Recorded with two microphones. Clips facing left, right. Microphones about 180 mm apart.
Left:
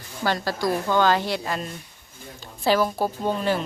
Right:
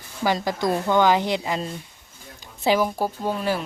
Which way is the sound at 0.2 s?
15° right (ahead or behind).